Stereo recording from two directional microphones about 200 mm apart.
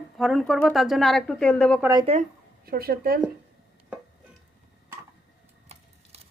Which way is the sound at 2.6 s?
50° right (ahead or behind).